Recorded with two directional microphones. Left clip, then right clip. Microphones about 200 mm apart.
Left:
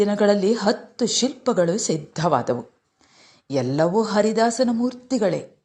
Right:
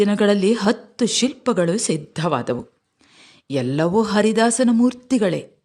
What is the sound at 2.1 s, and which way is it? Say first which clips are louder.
Speech: left 3 dB; 40° right (ahead or behind).